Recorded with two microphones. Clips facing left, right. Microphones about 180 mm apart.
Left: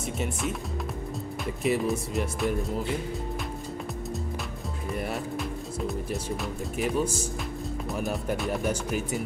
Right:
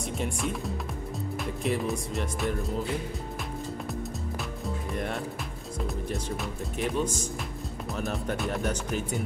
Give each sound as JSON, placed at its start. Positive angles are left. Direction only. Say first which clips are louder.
{"t": 0.2, "sound": "speech", "louder": "even", "side_deg": 0}
{"t": 4.9, "sound": "speech", "louder": "left 4 dB", "side_deg": 5}